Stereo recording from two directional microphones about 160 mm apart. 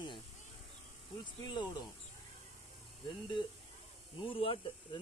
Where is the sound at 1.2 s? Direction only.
25° left (ahead or behind).